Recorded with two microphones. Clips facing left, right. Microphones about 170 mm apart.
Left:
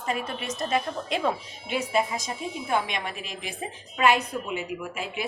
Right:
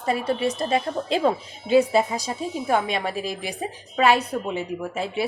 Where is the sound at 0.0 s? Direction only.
35° right (ahead or behind).